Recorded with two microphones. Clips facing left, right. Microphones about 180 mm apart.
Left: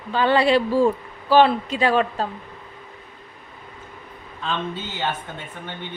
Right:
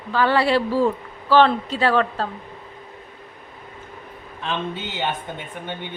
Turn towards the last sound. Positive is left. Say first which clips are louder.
# right 3 dB
turn(degrees=-15)  # may be behind; listen again after turning